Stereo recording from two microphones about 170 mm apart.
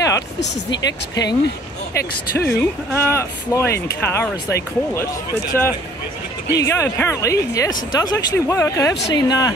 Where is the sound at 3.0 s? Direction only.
15° left (ahead or behind).